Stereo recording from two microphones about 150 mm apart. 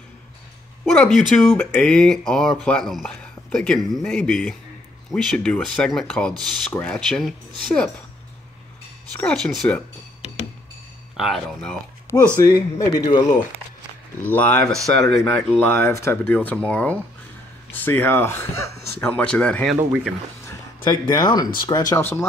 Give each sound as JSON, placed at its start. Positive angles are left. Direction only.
{"t": 0.8, "sound": "speech", "side_deg": 5}
{"t": 9.1, "sound": "speech", "side_deg": 5}
{"t": 11.1, "sound": "speech", "side_deg": 0}
{"t": 12.4, "sound": "speech", "side_deg": 25}
{"t": 14.2, "sound": "speech", "side_deg": 10}
{"t": 20.8, "sound": "speech", "side_deg": 25}